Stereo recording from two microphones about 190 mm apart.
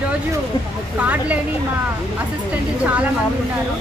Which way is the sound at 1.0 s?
10° right (ahead or behind).